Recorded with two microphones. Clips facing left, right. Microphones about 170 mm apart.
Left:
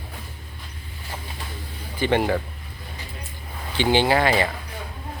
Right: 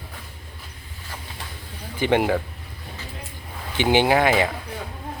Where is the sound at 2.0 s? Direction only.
15° right (ahead or behind).